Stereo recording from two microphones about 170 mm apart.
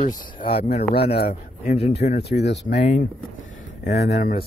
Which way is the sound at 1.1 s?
65° left (ahead or behind).